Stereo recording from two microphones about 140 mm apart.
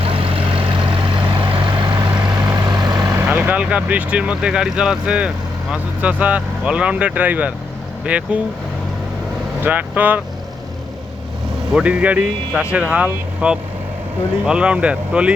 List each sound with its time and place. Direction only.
0.1 s vehicle: 40° right (ahead or behind); by 3.2 s 25° right (ahead or behind)
3.2 s speech: 10° right (ahead or behind)
9.6 s speech: 10° right (ahead or behind)
11.7 s speech: 10° right (ahead or behind)